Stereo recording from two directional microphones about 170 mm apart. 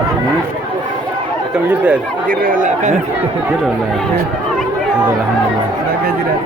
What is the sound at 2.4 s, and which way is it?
Speech, 50° right (ahead or behind).